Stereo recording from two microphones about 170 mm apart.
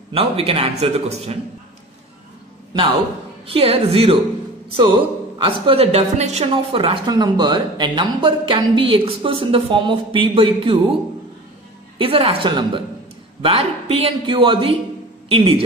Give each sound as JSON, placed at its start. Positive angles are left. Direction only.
{"t": 0.1, "sound": "a woman's voice", "side_deg": -35}
{"t": 3.4, "sound": "a woman's voice", "side_deg": -35}
{"t": 12.0, "sound": "a woman's voice", "side_deg": -35}